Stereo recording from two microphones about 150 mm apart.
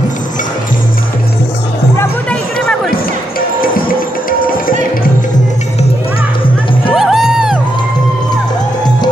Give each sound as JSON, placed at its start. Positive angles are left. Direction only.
{"t": 2.9, "sound": "basketball bounce", "side_deg": 75}
{"t": 4.3, "sound": "music", "side_deg": 70}
{"t": 6.9, "sound": "music", "side_deg": 0}